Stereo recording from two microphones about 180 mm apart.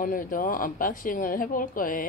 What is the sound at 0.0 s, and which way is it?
Speech, 50° left (ahead or behind).